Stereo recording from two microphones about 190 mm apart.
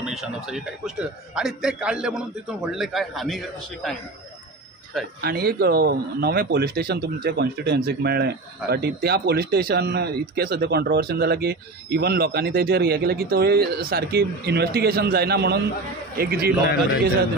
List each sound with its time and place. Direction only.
0.0 s a man's voice: centre (ahead or behind)
5.2 s speech: 55° right (ahead or behind)